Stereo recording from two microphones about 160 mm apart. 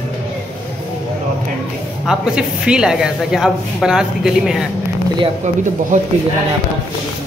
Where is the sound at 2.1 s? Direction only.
5° right (ahead or behind).